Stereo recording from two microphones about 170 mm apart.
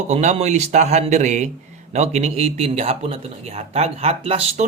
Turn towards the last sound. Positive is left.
turn(degrees=-35)  # may be behind; listen again after turning